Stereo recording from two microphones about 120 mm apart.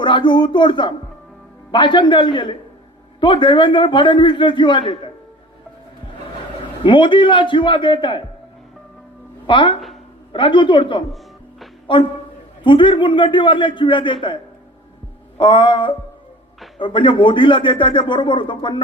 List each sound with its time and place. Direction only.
0.0 s speech: 40° left (ahead or behind)
6.8 s speech: 45° left (ahead or behind)
9.5 s speech: 45° left (ahead or behind)
15.4 s speech: 45° left (ahead or behind)